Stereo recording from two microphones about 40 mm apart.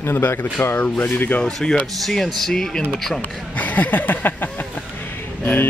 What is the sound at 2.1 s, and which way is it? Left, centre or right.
Speech, centre.